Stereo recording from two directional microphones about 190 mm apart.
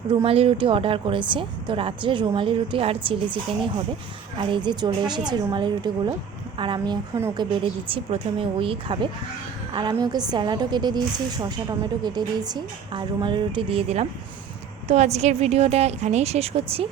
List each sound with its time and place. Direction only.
0.1 s a woman's voice: 30° right (ahead or behind)
4.4 s a woman's voice: 25° right (ahead or behind)